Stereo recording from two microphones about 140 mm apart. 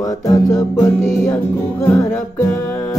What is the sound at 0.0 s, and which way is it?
Music, 25° left (ahead or behind).